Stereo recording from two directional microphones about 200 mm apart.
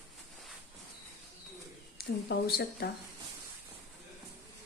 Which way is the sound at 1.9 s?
50° left (ahead or behind).